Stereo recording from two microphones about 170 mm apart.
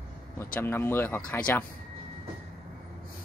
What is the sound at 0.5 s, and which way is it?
Speech, 15° left (ahead or behind).